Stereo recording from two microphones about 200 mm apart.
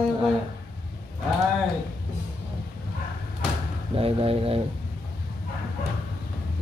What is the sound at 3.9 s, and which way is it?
Speech, 30° right (ahead or behind).